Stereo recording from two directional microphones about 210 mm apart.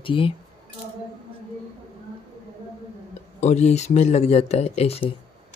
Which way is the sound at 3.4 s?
30° left (ahead or behind).